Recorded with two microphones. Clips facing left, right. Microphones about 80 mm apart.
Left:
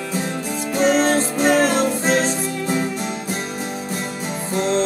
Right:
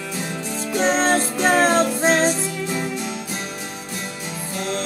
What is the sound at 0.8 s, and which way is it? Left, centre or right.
Music, right.